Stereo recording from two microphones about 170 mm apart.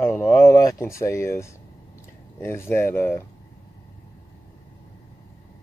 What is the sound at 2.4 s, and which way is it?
Speech, 15° left (ahead or behind).